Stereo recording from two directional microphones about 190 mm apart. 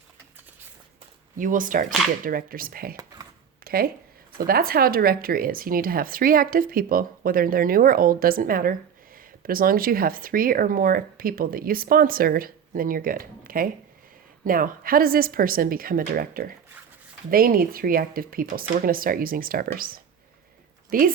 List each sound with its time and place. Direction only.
1.4 s speech: 45° right (ahead or behind)
2.9 s a sound: 20° right (ahead or behind)
3.6 s speech: 50° right (ahead or behind)